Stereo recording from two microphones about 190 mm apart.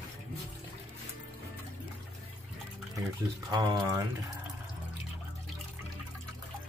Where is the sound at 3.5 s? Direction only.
20° right (ahead or behind).